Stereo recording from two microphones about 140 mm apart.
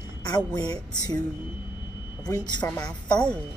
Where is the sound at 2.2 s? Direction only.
30° left (ahead or behind).